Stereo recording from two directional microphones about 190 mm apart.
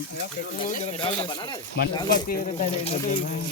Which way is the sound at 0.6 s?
40° left (ahead or behind).